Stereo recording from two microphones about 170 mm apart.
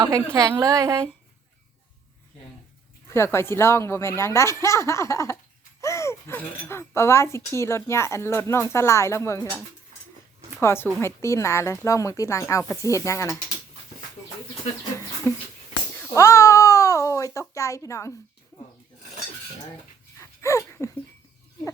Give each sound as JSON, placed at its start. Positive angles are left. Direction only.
{"t": 0.0, "sound": "a woman's voice", "side_deg": -20}
{"t": 3.1, "sound": "speech", "side_deg": 15}
{"t": 10.6, "sound": "speech", "side_deg": 15}
{"t": 15.3, "sound": "a child's voice", "side_deg": 20}
{"t": 20.1, "sound": "a sound", "side_deg": 15}